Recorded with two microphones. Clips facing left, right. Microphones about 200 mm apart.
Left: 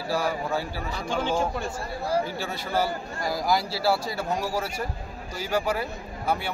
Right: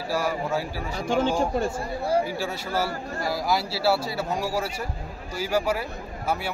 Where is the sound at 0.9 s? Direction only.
45° right (ahead or behind).